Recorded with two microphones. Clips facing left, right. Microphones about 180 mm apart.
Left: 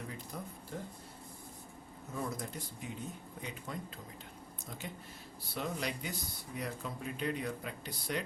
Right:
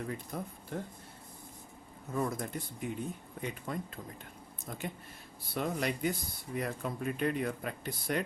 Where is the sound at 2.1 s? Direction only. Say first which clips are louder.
Right 5 dB; 55° right (ahead or behind).